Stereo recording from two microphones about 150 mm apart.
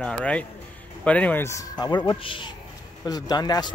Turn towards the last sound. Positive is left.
turn(degrees=25)  # may be behind; listen again after turning